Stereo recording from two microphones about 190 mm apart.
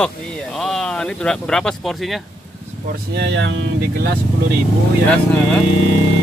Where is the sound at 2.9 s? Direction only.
60° right (ahead or behind).